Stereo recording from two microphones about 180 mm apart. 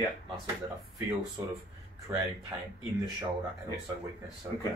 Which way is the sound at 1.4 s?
20° right (ahead or behind).